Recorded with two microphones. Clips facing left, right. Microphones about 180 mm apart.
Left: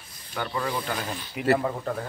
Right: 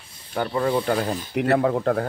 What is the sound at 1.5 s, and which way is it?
Speech, 65° right (ahead or behind).